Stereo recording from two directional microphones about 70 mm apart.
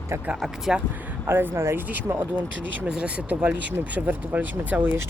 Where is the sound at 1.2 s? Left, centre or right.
Right.